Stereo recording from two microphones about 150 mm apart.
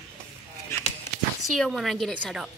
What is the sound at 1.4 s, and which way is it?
A woman's voice, centre (ahead or behind).